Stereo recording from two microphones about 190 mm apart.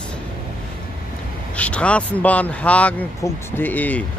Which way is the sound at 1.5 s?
5° left (ahead or behind).